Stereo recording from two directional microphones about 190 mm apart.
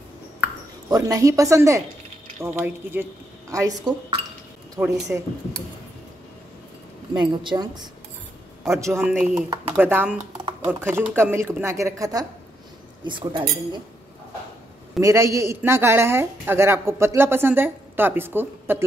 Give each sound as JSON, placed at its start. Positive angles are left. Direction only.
{"t": 0.4, "sound": "speech", "side_deg": -20}
{"t": 7.2, "sound": "a woman's voice", "side_deg": -20}
{"t": 9.1, "sound": "a woman's voice", "side_deg": -5}
{"t": 15.0, "sound": "speech", "side_deg": -15}